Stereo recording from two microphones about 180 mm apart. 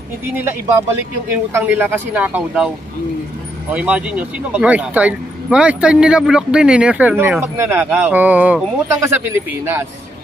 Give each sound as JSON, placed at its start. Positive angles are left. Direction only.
{"t": 0.3, "sound": "speech", "side_deg": -10}
{"t": 3.7, "sound": "speech", "side_deg": -5}